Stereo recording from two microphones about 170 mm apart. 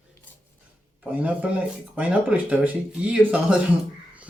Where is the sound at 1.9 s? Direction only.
5° right (ahead or behind).